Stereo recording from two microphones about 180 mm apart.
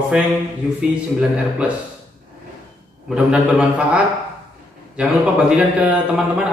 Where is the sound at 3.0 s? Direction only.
5° right (ahead or behind).